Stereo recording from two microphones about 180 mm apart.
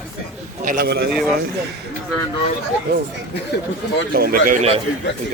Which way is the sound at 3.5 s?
70° left (ahead or behind).